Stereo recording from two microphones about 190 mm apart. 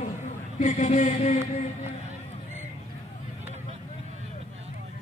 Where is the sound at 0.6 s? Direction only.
40° left (ahead or behind).